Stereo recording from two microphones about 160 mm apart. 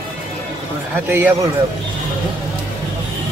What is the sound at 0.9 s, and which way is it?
Speech, 15° right (ahead or behind).